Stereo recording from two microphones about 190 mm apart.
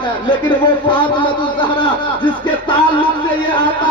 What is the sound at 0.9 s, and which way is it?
Speech, 25° left (ahead or behind).